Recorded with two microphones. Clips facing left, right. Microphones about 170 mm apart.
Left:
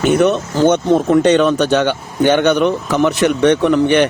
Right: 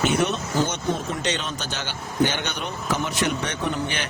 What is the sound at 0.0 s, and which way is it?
Speech, 55° left (ahead or behind).